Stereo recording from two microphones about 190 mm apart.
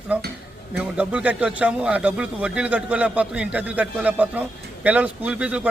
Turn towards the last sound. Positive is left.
turn(degrees=-5)  # may be behind; listen again after turning